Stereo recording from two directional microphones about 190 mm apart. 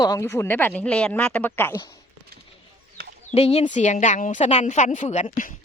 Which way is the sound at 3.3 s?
30° left (ahead or behind).